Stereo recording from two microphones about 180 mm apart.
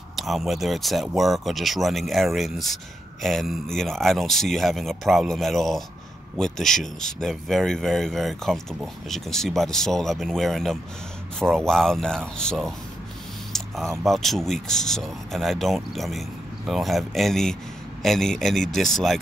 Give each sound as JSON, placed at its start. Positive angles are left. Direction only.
{"t": 0.1, "sound": "speech", "side_deg": 0}